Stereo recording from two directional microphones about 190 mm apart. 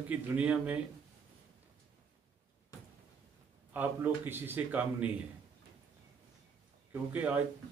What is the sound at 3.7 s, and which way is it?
A man's voice, 10° right (ahead or behind).